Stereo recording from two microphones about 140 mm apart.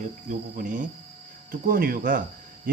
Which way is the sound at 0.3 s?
70° right (ahead or behind).